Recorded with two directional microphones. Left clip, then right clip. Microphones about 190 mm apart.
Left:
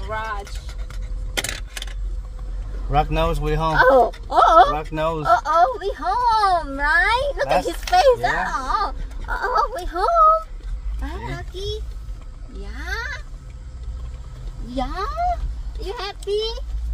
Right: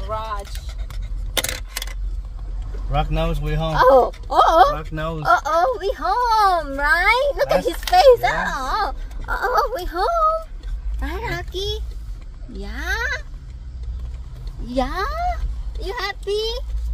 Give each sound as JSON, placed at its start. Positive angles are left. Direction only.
{"t": 0.1, "sound": "vehicle", "side_deg": 15}
{"t": 1.3, "sound": "a sound", "side_deg": -45}
{"t": 2.9, "sound": "speech", "side_deg": 50}
{"t": 3.7, "sound": "speech", "side_deg": 5}
{"t": 4.9, "sound": "speech", "side_deg": 55}
{"t": 5.2, "sound": "speech", "side_deg": -10}
{"t": 9.9, "sound": "speech", "side_deg": 0}
{"t": 11.2, "sound": "a sound", "side_deg": -55}
{"t": 12.6, "sound": "babbling", "side_deg": -65}
{"t": 14.8, "sound": "speech", "side_deg": -25}